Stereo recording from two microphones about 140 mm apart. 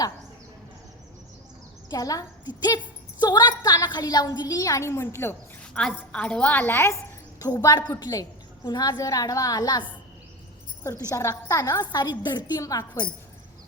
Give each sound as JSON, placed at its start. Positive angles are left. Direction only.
{"t": 1.9, "sound": "a woman's voice", "side_deg": 25}
{"t": 5.7, "sound": "a woman's voice", "side_deg": 10}
{"t": 11.1, "sound": "a woman's voice", "side_deg": 20}